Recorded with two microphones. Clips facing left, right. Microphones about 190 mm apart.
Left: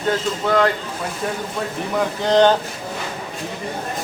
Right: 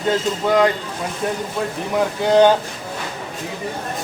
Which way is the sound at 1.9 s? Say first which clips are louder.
Right 2 dB; 10° right (ahead or behind).